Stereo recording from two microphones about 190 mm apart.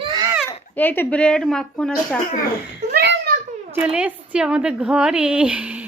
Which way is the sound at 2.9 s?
55° right (ahead or behind).